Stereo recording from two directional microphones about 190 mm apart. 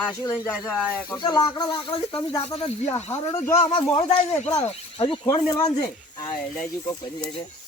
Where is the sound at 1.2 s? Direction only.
20° left (ahead or behind).